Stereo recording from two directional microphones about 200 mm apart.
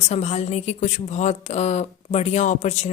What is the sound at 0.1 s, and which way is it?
A woman's voice, 35° left (ahead or behind).